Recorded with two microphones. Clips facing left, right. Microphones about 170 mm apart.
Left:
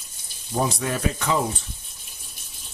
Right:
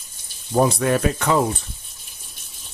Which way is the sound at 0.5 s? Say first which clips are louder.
Right 7 dB; 60° right (ahead or behind).